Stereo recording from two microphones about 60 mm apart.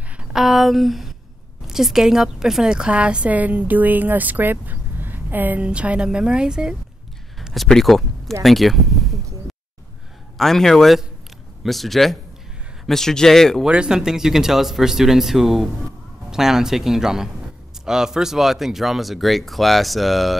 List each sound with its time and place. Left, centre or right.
0.2 s a woman's voice: centre; by 5.6 s right
5.6 s a woman's voice: centre
7.3 s a sound: centre
10.3 s speech: centre
13.7 s speech: centre